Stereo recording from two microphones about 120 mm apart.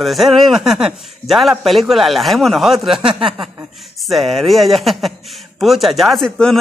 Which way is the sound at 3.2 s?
45° right (ahead or behind).